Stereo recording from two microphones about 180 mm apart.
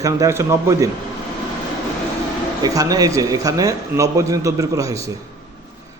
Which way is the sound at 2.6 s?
20° right (ahead or behind).